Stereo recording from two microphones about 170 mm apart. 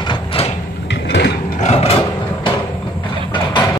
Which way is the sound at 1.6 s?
40° left (ahead or behind).